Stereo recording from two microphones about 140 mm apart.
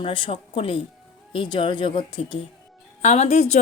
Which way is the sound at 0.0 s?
40° left (ahead or behind).